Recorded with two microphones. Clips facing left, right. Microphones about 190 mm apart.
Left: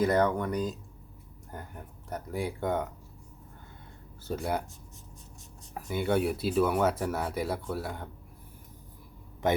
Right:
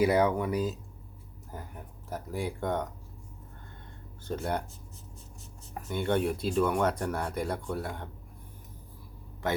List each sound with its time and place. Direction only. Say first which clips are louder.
0.0 s speech: right 1 dB; 10° right (ahead or behind)
4.3 s speech: left 1 dB; 5° left (ahead or behind)
5.7 s speech: left 1 dB; 5° left (ahead or behind)
9.4 s a man's voice: left 3 dB; 15° left (ahead or behind)